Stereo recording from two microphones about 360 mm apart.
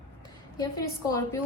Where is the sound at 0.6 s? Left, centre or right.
Centre.